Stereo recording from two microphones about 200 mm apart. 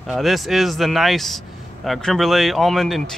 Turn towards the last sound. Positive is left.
turn(degrees=0)  # may be behind; listen again after turning